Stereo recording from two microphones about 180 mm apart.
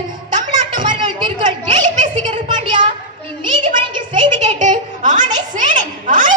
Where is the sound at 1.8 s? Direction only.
45° right (ahead or behind).